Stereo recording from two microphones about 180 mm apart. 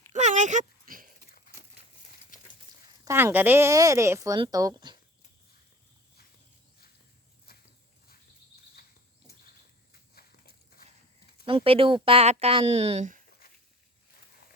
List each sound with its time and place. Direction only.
0.1 s oink: 40° right (ahead or behind)
3.0 s a woman's voice: 15° right (ahead or behind)
10.2 s walk: 55° left (ahead or behind)
11.4 s speech: 30° right (ahead or behind)